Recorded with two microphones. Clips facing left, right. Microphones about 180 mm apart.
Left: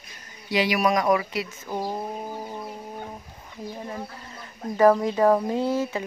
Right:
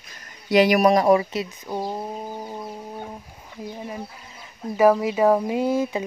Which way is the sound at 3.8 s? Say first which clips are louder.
Right 1 dB; 10° right (ahead or behind).